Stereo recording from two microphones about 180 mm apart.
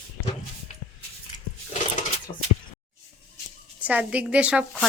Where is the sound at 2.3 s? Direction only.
25° left (ahead or behind).